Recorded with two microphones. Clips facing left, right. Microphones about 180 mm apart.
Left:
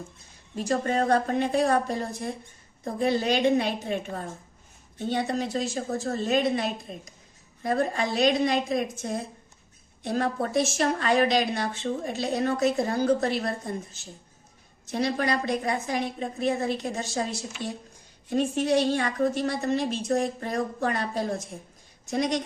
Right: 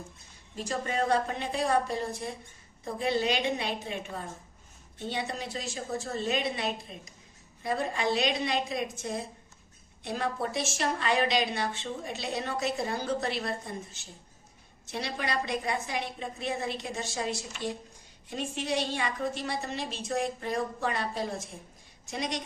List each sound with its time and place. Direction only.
0.7 s speech: 45° left (ahead or behind)
14.9 s speech: 45° left (ahead or behind)
17.5 s speech: 5° left (ahead or behind)
18.3 s speech: 50° left (ahead or behind)